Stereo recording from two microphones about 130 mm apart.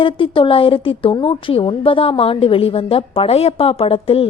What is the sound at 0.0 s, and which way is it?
A woman's voice, 40° left (ahead or behind).